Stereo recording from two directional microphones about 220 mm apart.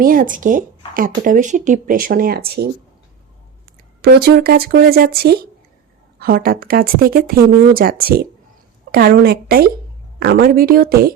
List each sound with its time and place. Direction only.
0.0 s speech: 40° right (ahead or behind)
4.0 s speech: 45° right (ahead or behind)